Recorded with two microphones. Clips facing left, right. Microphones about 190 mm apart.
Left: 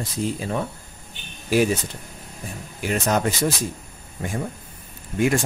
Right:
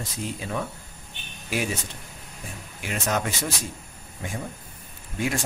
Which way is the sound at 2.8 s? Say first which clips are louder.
Left 6 dB; 40° left (ahead or behind).